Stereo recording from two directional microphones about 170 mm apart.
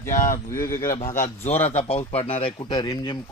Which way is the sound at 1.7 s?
40° left (ahead or behind).